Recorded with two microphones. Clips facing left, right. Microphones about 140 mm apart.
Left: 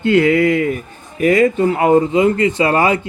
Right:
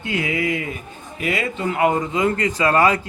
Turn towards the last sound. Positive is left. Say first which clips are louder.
# left 3 dB
turn(degrees=25)  # may be behind; listen again after turning